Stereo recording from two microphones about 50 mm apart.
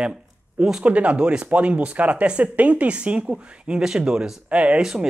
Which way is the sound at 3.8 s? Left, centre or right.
Centre.